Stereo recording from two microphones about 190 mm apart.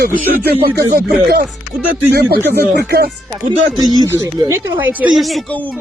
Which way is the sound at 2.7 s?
55° right (ahead or behind).